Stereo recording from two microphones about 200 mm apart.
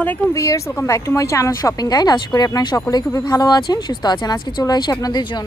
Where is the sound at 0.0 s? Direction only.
10° left (ahead or behind).